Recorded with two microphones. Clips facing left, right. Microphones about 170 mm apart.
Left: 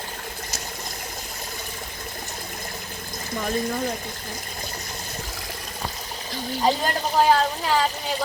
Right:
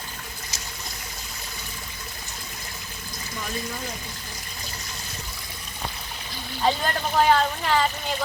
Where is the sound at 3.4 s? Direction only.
50° left (ahead or behind).